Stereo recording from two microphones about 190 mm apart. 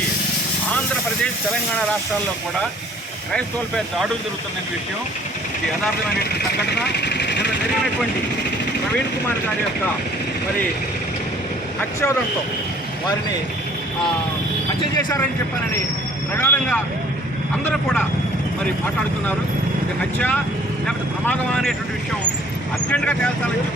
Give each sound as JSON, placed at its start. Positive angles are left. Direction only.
{"t": 3.3, "sound": "speech", "side_deg": 0}
{"t": 6.6, "sound": "speech", "side_deg": 60}
{"t": 11.8, "sound": "speech", "side_deg": 15}
{"t": 14.8, "sound": "speech", "side_deg": 20}
{"t": 16.3, "sound": "speech", "side_deg": 10}
{"t": 20.1, "sound": "speech", "side_deg": 10}
{"t": 22.9, "sound": "speech", "side_deg": 5}